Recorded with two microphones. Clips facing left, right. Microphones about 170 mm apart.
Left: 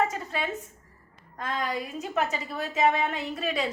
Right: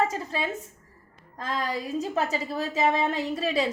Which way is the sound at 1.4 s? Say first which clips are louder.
Right 1 dB; 35° right (ahead or behind).